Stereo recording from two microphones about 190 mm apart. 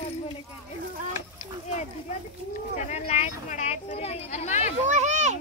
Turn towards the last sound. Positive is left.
turn(degrees=-40)  # may be behind; listen again after turning